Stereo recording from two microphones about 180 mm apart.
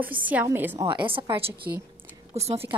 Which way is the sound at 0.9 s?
30° right (ahead or behind).